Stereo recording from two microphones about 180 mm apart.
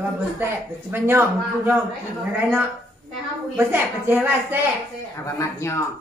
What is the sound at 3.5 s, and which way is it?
Speech, 10° right (ahead or behind).